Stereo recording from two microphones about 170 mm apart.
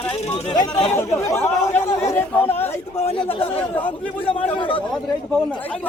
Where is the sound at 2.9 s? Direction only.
35° left (ahead or behind).